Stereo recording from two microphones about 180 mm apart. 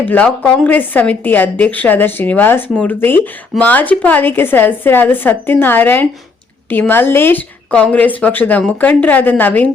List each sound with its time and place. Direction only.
0.1 s a woman's voice: 5° left (ahead or behind)